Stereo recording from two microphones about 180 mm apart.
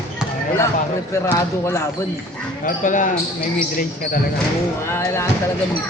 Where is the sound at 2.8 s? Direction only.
45° left (ahead or behind).